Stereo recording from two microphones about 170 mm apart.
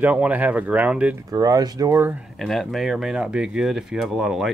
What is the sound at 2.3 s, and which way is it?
Speech, centre (ahead or behind).